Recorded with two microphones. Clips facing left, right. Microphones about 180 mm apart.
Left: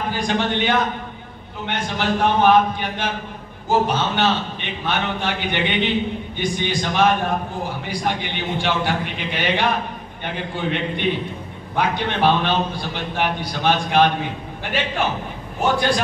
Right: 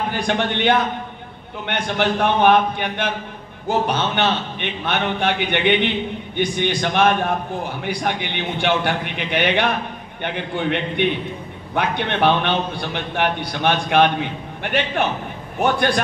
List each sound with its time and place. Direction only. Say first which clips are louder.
0.1 s a man's voice: even; 60° right (ahead or behind)